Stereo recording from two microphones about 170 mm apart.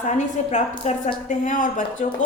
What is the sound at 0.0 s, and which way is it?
A woman's voice, 45° left (ahead or behind).